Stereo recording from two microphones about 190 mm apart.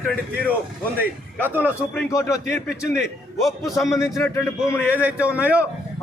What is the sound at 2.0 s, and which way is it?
Speech, 15° left (ahead or behind).